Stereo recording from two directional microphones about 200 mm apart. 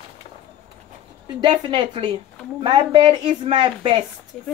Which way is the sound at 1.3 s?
25° right (ahead or behind).